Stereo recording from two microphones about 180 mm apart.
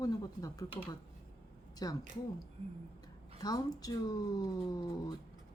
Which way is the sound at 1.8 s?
20° left (ahead or behind).